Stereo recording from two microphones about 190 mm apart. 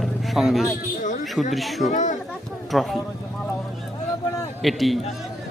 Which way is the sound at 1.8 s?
40° left (ahead or behind).